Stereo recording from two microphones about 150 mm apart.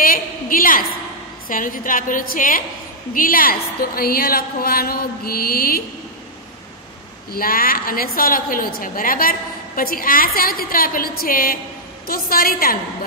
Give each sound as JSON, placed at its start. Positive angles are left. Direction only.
{"t": 0.0, "sound": "a woman's voice", "side_deg": 70}
{"t": 7.3, "sound": "a woman's voice", "side_deg": 75}